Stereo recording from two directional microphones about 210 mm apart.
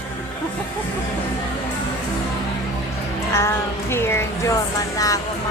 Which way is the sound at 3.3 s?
10° left (ahead or behind).